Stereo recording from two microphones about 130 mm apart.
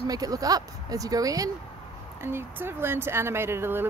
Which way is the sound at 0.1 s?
30° right (ahead or behind).